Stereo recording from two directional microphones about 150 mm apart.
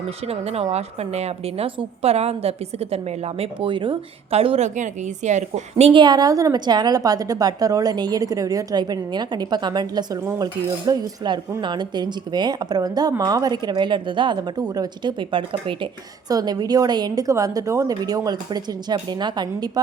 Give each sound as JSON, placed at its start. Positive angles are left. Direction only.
{"t": 0.3, "sound": "a woman's voice", "side_deg": -40}
{"t": 6.0, "sound": "speech", "side_deg": -25}